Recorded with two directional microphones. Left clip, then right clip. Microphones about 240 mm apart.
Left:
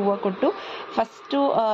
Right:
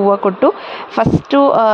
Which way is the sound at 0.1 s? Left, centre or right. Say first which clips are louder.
Right 10 dB; right.